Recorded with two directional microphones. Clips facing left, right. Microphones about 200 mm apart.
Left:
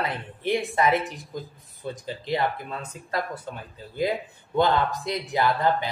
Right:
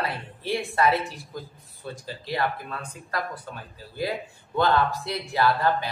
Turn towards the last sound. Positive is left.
turn(degrees=20)  # may be behind; listen again after turning